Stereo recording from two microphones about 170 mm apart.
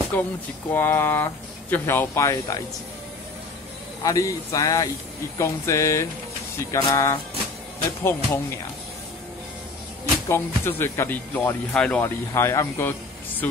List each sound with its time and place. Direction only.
0.1 s speech: 10° left (ahead or behind)
4.0 s speech: 20° left (ahead or behind)
10.2 s speech: 15° left (ahead or behind)